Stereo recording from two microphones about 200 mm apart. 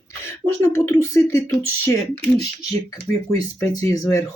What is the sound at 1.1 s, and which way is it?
Speech, 15° left (ahead or behind).